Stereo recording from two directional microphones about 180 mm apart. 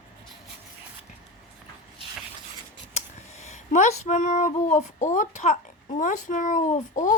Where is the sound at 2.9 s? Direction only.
40° left (ahead or behind).